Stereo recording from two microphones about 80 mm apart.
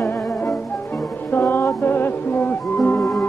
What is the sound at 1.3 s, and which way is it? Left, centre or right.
Music, left.